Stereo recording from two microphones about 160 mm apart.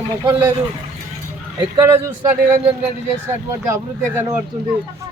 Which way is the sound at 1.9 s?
15° right (ahead or behind).